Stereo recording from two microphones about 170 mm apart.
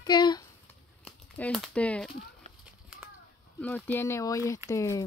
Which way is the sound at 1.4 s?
5° left (ahead or behind).